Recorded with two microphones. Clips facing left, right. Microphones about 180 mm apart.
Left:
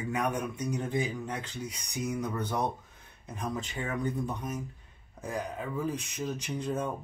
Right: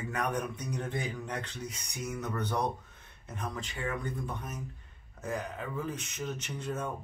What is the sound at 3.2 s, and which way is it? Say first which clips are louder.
A man's voice: left 3 dB; 20° left (ahead or behind).